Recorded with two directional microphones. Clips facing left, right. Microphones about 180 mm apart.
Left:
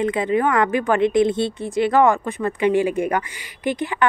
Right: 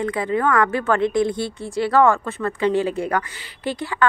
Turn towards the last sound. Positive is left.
turn(degrees=15)  # may be behind; listen again after turning